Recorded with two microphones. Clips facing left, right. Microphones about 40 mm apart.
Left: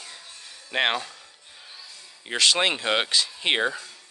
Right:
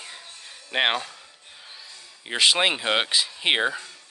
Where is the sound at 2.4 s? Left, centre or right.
Centre.